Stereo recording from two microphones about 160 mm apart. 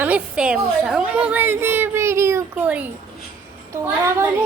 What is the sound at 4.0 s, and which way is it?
Speech, 15° right (ahead or behind).